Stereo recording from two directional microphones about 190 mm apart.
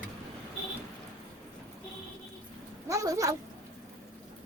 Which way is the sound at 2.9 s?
15° right (ahead or behind).